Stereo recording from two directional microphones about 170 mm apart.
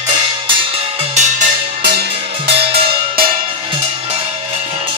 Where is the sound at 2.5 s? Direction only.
35° right (ahead or behind).